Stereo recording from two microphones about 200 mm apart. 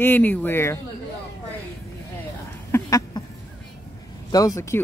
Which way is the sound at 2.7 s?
15° left (ahead or behind).